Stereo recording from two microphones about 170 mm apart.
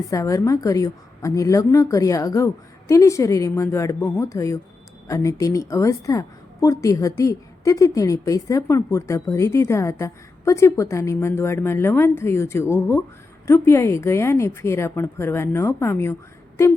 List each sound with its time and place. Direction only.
0.1 s a woman's voice: 20° left (ahead or behind)